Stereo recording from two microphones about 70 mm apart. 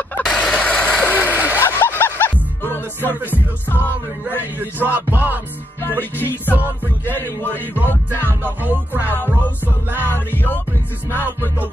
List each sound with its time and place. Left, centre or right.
0.2 s a sound: centre
0.6 s vehicle: centre
1.0 s a sound: left
1.3 s a sound: right
1.6 s music: left
4.3 s music: right
5.8 s music: left
6.5 s music: right
7.2 s music: left
8.6 s music: right
10.0 s music: left